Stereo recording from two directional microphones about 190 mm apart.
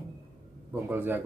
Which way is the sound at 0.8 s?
10° right (ahead or behind).